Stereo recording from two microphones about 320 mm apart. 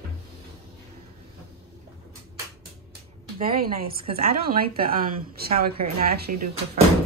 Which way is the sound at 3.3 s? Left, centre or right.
Right.